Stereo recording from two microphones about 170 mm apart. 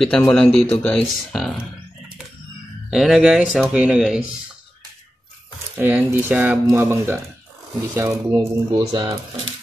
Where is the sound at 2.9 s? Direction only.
5° right (ahead or behind).